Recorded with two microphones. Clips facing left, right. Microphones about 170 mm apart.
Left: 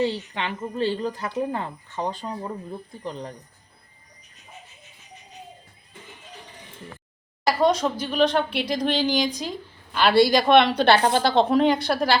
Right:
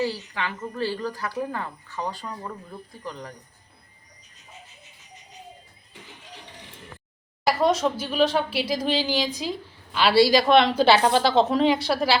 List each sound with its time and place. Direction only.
0.0 s speech: 20° left (ahead or behind)
7.4 s speech: 5° right (ahead or behind)